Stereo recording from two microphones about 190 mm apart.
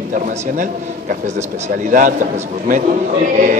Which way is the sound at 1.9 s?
45° right (ahead or behind).